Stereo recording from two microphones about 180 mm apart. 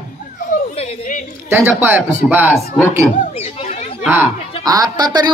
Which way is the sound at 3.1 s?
40° left (ahead or behind).